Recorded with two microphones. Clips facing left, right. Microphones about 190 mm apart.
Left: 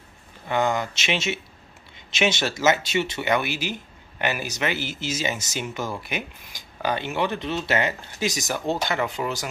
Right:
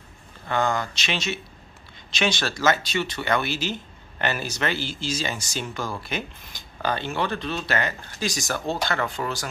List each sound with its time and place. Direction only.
0.5 s speech: 20° left (ahead or behind)